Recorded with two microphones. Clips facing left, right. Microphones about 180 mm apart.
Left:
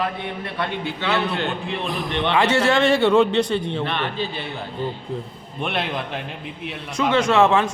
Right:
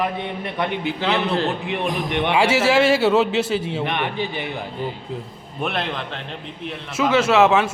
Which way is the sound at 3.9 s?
15° right (ahead or behind).